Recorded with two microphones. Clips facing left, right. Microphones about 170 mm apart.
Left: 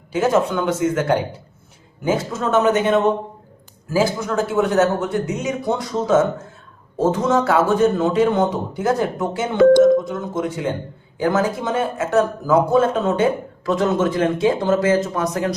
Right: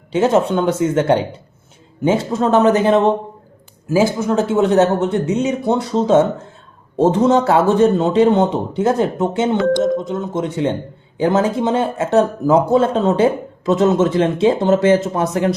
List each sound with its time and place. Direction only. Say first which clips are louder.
0.1 s a man's voice: right 3 dB; 25° right (ahead or behind)
3.8 s speech: right 4 dB; 20° right (ahead or behind)